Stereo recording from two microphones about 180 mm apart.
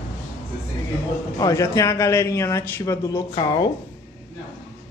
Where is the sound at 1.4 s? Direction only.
20° left (ahead or behind).